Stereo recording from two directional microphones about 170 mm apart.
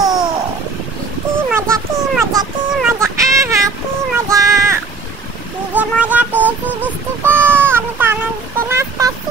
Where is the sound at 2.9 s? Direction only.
15° right (ahead or behind).